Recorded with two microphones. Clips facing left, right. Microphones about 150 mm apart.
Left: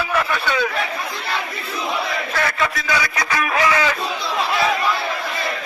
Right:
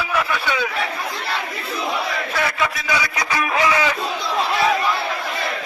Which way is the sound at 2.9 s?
20° right (ahead or behind).